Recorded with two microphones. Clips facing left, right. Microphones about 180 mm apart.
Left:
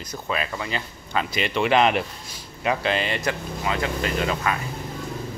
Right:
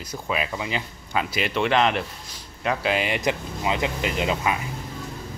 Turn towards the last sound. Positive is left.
turn(degrees=-15)  # may be behind; listen again after turning